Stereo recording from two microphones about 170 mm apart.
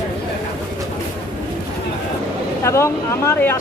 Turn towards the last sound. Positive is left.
turn(degrees=15)  # may be behind; listen again after turning